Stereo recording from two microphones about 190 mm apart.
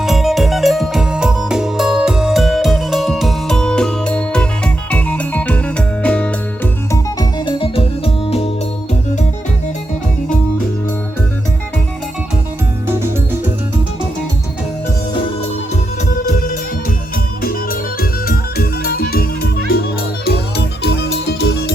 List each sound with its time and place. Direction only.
0.0 s music: centre (ahead or behind)
6.9 s organ: 20° left (ahead or behind)
16.2 s music: 45° left (ahead or behind); by 21.7 s 60° left (ahead or behind)